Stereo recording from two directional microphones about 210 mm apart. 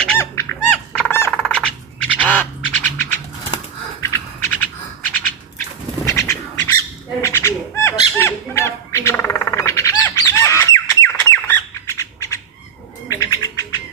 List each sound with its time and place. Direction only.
0.0 s music: 10° left (ahead or behind)
0.9 s a sound: 10° left (ahead or behind)
2.0 s bird: 5° left (ahead or behind)
4.0 s music: 10° left (ahead or behind)
6.0 s bird: 15° left (ahead or behind)